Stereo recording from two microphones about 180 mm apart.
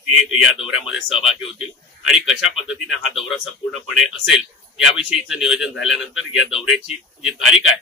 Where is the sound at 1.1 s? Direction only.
30° left (ahead or behind).